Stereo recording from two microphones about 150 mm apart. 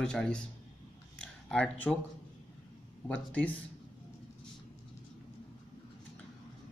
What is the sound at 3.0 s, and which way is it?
Speech, 10° left (ahead or behind).